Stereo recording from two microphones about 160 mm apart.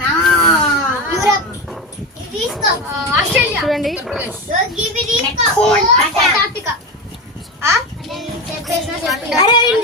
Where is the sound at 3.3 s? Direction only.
Centre (ahead or behind).